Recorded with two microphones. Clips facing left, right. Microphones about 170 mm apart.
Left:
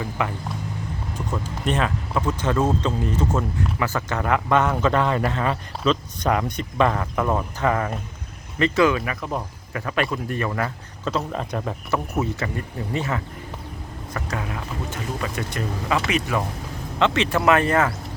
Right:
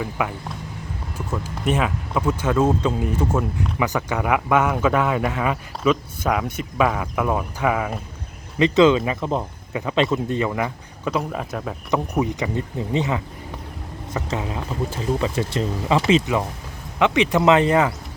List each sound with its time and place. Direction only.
0.0 s speech: 5° right (ahead or behind)
8.5 s speech: 20° right (ahead or behind); by 11.7 s 5° right (ahead or behind)
11.9 s speech: 15° right (ahead or behind)
14.3 s speech: 25° right (ahead or behind)